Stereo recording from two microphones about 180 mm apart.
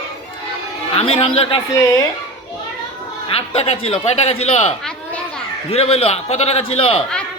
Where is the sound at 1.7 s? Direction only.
15° left (ahead or behind).